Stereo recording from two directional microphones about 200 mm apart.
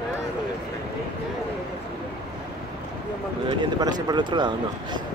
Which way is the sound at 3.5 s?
20° right (ahead or behind).